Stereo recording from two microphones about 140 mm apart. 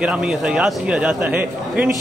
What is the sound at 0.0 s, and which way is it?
Speech, 5° right (ahead or behind).